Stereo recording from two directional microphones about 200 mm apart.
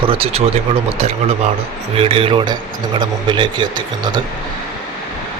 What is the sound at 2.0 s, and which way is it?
A man's voice, 25° right (ahead or behind).